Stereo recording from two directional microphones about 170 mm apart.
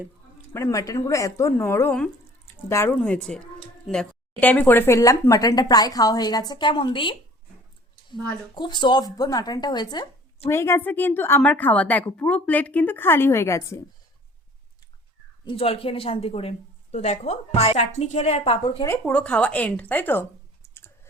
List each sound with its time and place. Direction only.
0.5 s a woman's voice: 15° left (ahead or behind)
15.4 s a woman's voice: 35° left (ahead or behind)
18.9 s speech: 10° left (ahead or behind)